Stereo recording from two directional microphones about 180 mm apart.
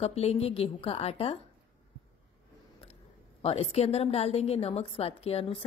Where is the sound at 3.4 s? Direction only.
35° left (ahead or behind).